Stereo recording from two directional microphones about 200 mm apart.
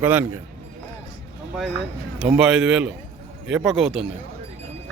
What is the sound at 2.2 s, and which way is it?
A man's voice, 5° right (ahead or behind).